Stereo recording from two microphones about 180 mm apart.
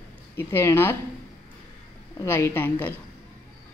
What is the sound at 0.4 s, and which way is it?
Speech, 15° left (ahead or behind).